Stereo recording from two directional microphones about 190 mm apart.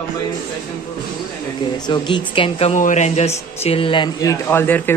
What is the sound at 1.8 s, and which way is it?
A woman's voice, 25° left (ahead or behind).